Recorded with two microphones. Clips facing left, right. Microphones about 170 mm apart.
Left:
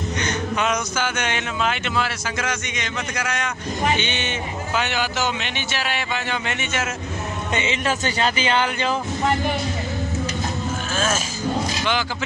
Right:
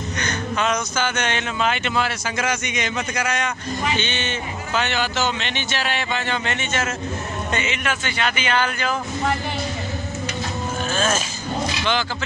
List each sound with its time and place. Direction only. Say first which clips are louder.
0.2 s speech: even; 15° left (ahead or behind); by 3.5 s centre (ahead or behind)
4.0 s speech: even; 15° left (ahead or behind)
7.5 s speech: left 3 dB; 30° left (ahead or behind)
8.5 s speech: left 1 dB; 25° left (ahead or behind)
11.0 s speech: right 1 dB; 5° left (ahead or behind)